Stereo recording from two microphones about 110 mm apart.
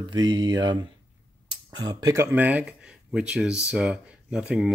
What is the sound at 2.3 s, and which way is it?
Speech, 15° right (ahead or behind).